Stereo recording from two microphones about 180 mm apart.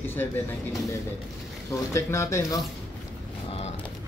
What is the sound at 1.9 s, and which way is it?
Speech, 15° left (ahead or behind).